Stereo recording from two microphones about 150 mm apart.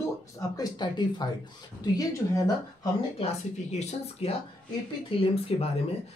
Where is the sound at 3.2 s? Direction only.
45° left (ahead or behind).